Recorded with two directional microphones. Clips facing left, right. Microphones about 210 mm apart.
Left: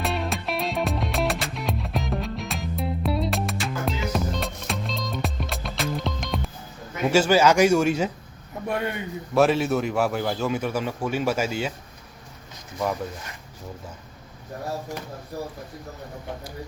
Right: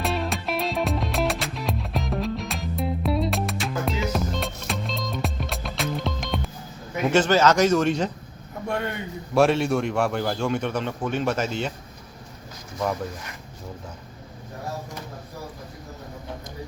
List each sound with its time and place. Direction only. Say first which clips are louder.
0.0 s music: right 1 dB; centre (ahead or behind)
7.1 s speech: left 1 dB; 10° left (ahead or behind)
9.3 s a man's voice: even; centre (ahead or behind)